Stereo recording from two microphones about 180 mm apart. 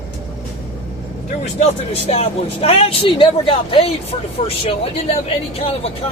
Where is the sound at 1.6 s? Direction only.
35° left (ahead or behind).